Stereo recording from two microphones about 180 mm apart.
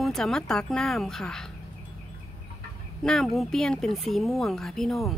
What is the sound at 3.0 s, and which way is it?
Speech, centre (ahead or behind).